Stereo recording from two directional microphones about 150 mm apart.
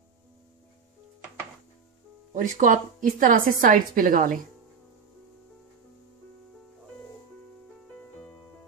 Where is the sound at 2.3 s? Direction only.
60° right (ahead or behind).